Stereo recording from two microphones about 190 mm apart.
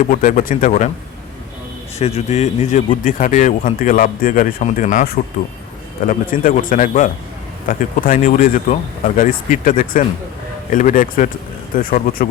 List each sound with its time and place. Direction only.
0.0 s speech: 45° left (ahead or behind)
2.0 s speech: 35° left (ahead or behind)